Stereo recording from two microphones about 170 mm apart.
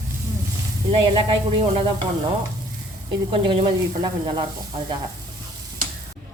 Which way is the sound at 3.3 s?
30° right (ahead or behind).